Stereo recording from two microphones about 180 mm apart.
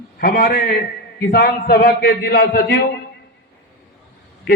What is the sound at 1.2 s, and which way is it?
A man's voice, 60° left (ahead or behind).